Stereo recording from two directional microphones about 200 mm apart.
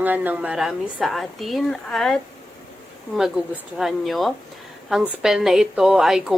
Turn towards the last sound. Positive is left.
turn(degrees=0)  # may be behind; listen again after turning